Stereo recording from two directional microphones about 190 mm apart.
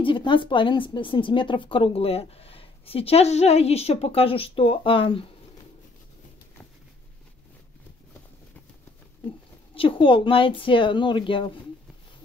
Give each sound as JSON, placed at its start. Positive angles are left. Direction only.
{"t": 0.0, "sound": "speech", "side_deg": 25}
{"t": 9.8, "sound": "speech", "side_deg": 25}